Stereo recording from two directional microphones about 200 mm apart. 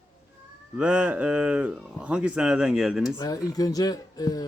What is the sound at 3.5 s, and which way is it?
Speech, 20° left (ahead or behind).